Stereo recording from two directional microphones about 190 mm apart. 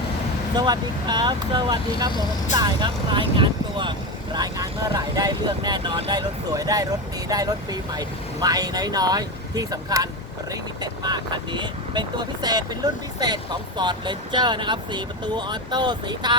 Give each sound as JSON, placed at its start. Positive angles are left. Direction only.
{"t": 0.5, "sound": "speech", "side_deg": -20}